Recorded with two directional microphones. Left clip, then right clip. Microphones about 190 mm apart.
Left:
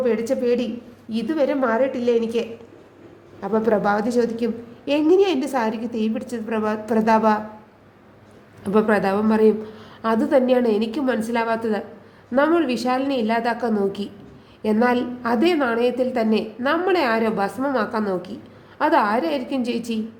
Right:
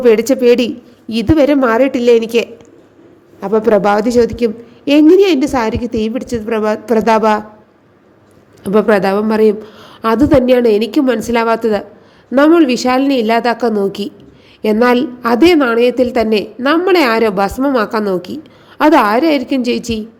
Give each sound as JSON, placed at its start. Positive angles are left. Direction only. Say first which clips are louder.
{"t": 0.0, "sound": "a woman's voice", "louder": "right 11 dB", "side_deg": -45}
{"t": 8.6, "sound": "a woman's voice", "louder": "right 8 dB", "side_deg": -30}